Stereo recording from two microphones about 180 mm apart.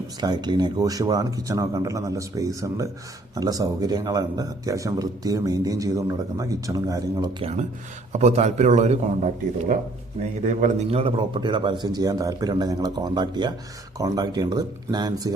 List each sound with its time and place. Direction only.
0.2 s a man's voice: 25° right (ahead or behind)
8.1 s a man's voice: 40° right (ahead or behind); by 15.3 s 20° right (ahead or behind)